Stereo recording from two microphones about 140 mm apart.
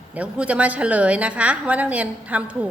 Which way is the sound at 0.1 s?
10° right (ahead or behind).